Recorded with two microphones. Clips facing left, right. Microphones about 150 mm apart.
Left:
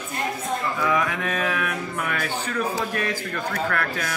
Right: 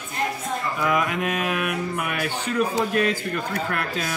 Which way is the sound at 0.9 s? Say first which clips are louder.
Right 2 dB; 20° right (ahead or behind).